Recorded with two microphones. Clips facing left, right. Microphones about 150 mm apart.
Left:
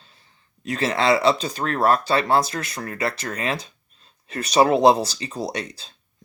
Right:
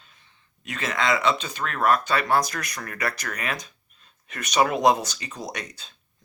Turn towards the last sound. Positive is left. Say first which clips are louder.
# left 6 dB
turn(degrees=30)  # may be behind; listen again after turning